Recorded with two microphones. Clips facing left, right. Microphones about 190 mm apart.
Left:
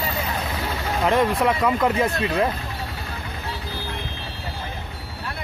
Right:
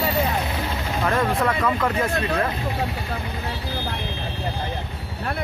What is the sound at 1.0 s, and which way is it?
Speech, 20° left (ahead or behind).